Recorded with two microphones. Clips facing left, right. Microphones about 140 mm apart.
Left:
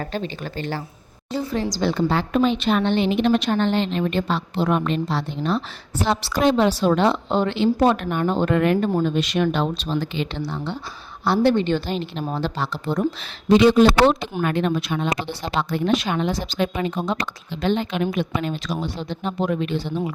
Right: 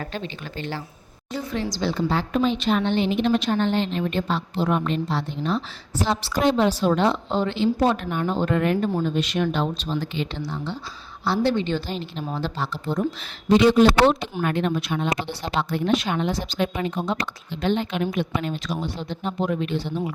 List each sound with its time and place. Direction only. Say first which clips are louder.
0.0 s speech: left 4 dB; 40° left (ahead or behind)
1.8 s a woman's voice: left 3 dB; 65° left (ahead or behind)
14.4 s a woman's voice: left 2 dB; 90° left